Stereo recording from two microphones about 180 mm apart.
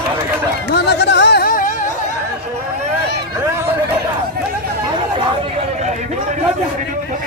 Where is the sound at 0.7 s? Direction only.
65° left (ahead or behind); by 1.7 s 50° left (ahead or behind).